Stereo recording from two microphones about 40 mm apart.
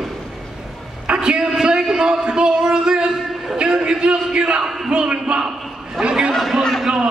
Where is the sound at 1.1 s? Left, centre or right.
Right.